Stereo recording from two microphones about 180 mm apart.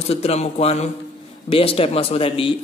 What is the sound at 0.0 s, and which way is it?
A man's voice, 35° left (ahead or behind).